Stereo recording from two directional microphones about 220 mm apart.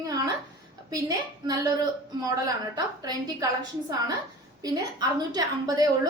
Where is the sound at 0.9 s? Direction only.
15° right (ahead or behind).